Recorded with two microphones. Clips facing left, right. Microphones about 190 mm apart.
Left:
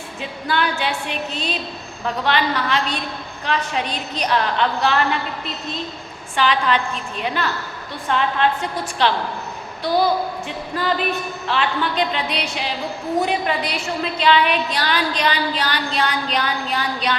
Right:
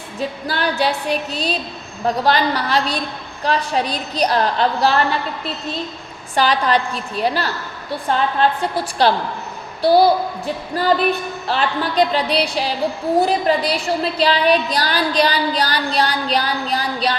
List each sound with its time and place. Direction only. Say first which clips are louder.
0.2 s a woman's voice: right 1 dB; 35° right (ahead or behind)
6.3 s a woman's voice: right 2 dB; 40° right (ahead or behind)